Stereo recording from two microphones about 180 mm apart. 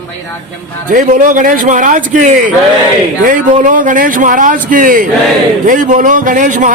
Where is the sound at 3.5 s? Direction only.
45° right (ahead or behind).